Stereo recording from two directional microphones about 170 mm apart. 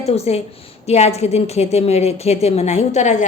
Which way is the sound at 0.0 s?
40° left (ahead or behind).